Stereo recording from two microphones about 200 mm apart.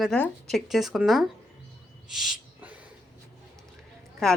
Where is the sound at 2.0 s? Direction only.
Centre (ahead or behind).